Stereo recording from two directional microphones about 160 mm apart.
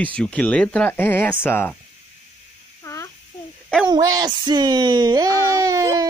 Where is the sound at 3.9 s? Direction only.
25° right (ahead or behind).